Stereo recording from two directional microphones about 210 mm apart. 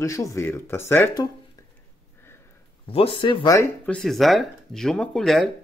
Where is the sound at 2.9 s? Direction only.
25° left (ahead or behind).